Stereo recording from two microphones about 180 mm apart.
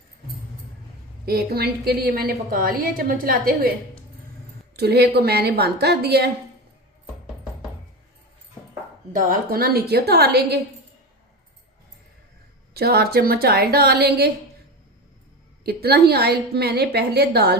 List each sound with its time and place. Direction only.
1.2 s a woman's voice: 60° right (ahead or behind)
4.8 s a woman's voice: 60° right (ahead or behind)
9.1 s a woman's voice: 50° right (ahead or behind)
12.7 s a woman's voice: 60° right (ahead or behind)
15.6 s a woman's voice: 60° right (ahead or behind)